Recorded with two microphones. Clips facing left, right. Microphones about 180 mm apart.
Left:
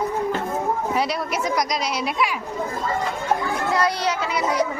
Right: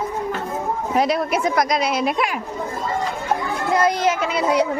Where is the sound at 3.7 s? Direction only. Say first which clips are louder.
Right 5 dB; 50° right (ahead or behind).